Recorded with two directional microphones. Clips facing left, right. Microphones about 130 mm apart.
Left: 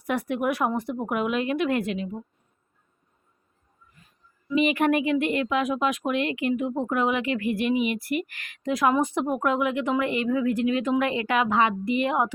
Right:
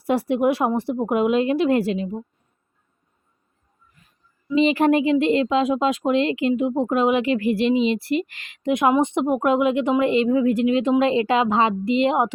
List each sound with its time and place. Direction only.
0.0 s speech: 30° right (ahead or behind)
4.4 s speech: 30° right (ahead or behind)